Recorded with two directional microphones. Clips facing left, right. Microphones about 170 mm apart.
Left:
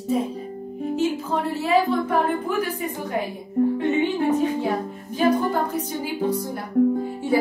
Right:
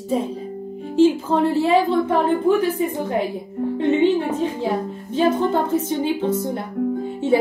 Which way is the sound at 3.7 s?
30° right (ahead or behind).